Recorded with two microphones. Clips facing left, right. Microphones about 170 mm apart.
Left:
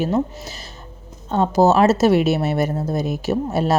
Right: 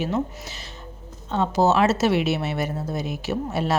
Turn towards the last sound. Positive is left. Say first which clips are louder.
# left 5 dB
turn(degrees=40)  # may be behind; listen again after turning